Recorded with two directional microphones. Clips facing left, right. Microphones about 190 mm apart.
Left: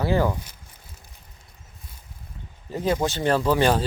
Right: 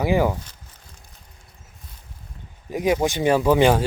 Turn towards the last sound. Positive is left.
turn(degrees=-15)  # may be behind; listen again after turning